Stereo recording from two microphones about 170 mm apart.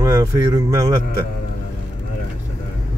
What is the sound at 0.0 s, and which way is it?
Speech, 20° right (ahead or behind).